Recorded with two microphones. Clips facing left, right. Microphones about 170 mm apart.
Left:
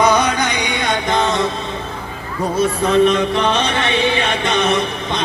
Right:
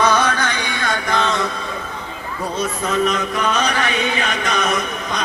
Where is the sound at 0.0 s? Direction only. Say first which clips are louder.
Left 2 dB; 15° left (ahead or behind).